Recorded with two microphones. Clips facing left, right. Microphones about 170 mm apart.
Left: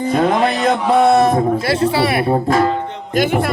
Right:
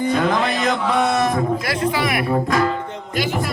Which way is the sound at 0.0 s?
30° left (ahead or behind).